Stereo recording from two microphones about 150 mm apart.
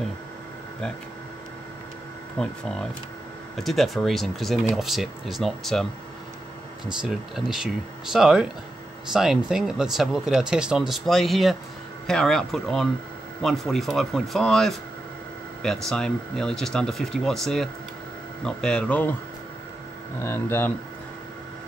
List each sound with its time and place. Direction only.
2.4 s speech: 5° left (ahead or behind)
3.5 s speech: centre (ahead or behind)
6.9 s speech: 5° right (ahead or behind)
20.2 s speech: 15° left (ahead or behind)